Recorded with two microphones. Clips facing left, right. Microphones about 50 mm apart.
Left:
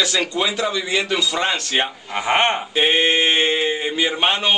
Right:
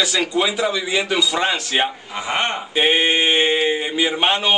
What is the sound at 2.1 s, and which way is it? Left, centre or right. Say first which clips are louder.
Speech: left 4 dB; left.